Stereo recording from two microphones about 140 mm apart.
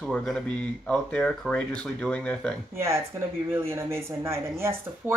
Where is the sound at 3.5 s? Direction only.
15° right (ahead or behind).